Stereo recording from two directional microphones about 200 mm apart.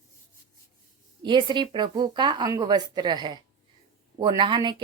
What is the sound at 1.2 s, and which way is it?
Speech, 20° right (ahead or behind).